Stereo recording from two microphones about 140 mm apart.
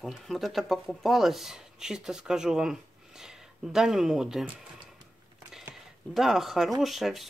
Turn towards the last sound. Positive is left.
turn(degrees=0)  # may be behind; listen again after turning